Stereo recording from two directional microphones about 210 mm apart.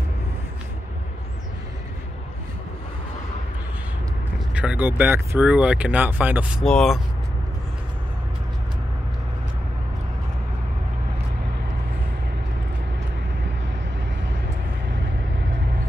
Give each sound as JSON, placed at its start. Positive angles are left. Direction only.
{"t": 4.6, "sound": "speech", "side_deg": -5}